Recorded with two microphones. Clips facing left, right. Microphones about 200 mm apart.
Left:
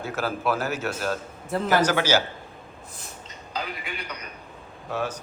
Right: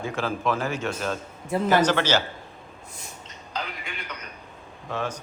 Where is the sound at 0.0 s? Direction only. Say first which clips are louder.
Even; 5° left (ahead or behind).